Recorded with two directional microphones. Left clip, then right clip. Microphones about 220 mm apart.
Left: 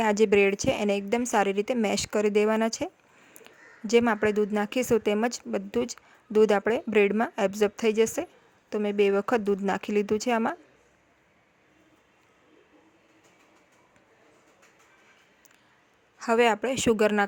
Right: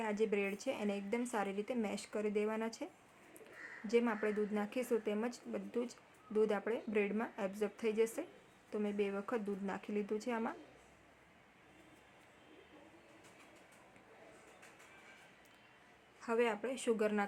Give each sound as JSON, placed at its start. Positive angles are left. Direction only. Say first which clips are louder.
{"t": 0.0, "sound": "speech", "louder": "left 15 dB", "side_deg": 45}
{"t": 16.2, "sound": "speech", "louder": "left 13 dB", "side_deg": 45}